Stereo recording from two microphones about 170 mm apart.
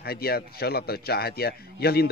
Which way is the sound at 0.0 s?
65° left (ahead or behind).